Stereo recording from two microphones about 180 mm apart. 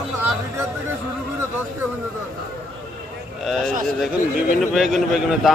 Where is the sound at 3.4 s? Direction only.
Centre (ahead or behind).